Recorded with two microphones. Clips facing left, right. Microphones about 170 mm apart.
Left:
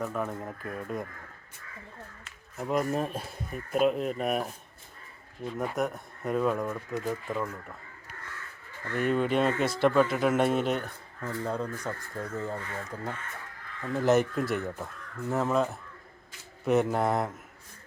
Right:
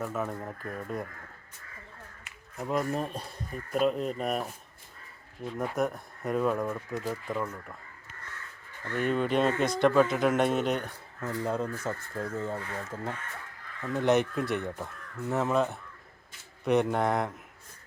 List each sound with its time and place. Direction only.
0.0 s speech: centre (ahead or behind)
2.6 s speech: centre (ahead or behind)
5.5 s speech: centre (ahead or behind)
8.9 s speech: centre (ahead or behind)
11.2 s speech: 10° right (ahead or behind)